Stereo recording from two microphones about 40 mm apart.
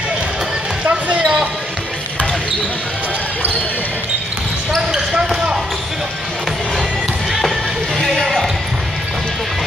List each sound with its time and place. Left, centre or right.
0.8 s basketball bounce: right
4.7 s basketball bounce: centre
8.1 s basketball bounce: centre